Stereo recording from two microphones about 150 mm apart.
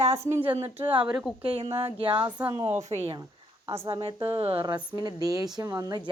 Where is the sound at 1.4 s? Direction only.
40° right (ahead or behind).